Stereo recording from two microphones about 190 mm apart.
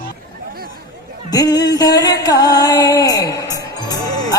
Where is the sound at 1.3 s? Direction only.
20° left (ahead or behind).